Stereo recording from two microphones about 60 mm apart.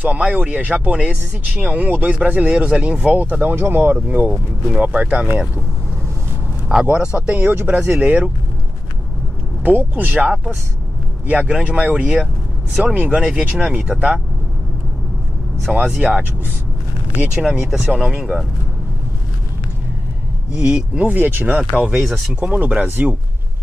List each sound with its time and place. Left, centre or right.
0.0 s speech: right
3.3 s speech: right
6.7 s speech: centre
7.2 s speech: right
9.6 s speech: right
10.2 s speech: centre
11.6 s speech: right
15.7 s speech: centre
20.5 s speech: centre
22.3 s speech: right